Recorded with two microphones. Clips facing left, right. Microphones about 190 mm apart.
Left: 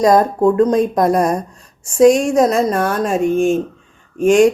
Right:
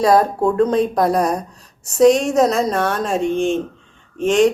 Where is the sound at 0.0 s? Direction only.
5° right (ahead or behind).